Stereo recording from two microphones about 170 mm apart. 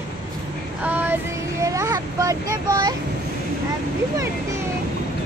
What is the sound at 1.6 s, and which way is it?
Speech, 20° right (ahead or behind).